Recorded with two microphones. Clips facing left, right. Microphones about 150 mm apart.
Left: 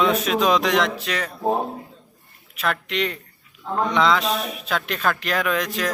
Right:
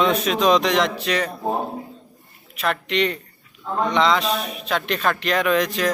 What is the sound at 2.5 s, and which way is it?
Speech, centre (ahead or behind).